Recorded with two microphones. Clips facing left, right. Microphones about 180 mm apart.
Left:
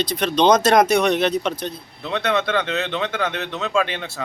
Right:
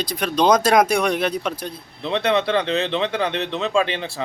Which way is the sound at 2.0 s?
30° right (ahead or behind).